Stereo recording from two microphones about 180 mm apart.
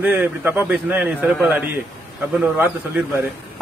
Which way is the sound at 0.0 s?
10° right (ahead or behind).